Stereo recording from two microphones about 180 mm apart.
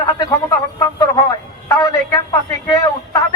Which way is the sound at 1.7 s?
20° left (ahead or behind).